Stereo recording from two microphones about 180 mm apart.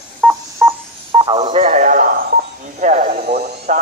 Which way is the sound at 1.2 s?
30° right (ahead or behind).